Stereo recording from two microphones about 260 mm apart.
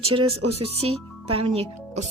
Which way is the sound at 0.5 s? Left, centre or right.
Right.